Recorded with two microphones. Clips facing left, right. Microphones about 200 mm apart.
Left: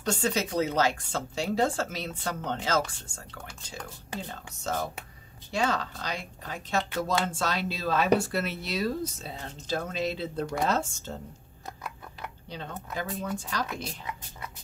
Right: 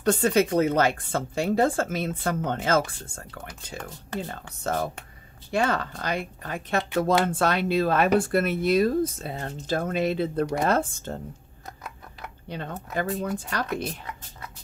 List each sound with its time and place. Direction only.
0.0 s speech: 55° right (ahead or behind)
4.4 s speech: 55° right (ahead or behind)
11.6 s a sound: centre (ahead or behind)
12.4 s speech: 60° right (ahead or behind)